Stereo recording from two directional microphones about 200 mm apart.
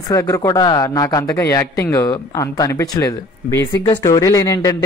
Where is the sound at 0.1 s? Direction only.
15° left (ahead or behind).